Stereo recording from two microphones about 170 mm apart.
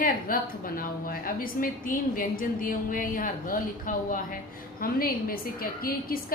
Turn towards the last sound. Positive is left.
turn(degrees=60)  # may be behind; listen again after turning